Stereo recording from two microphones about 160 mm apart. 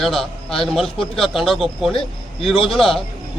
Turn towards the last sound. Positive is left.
turn(degrees=0)  # may be behind; listen again after turning